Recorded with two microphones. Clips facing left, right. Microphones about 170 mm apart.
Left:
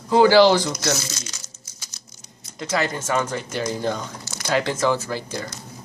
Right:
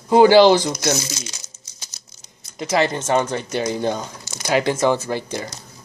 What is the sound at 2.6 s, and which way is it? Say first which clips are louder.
Speech: right 5 dB; 20° right (ahead or behind).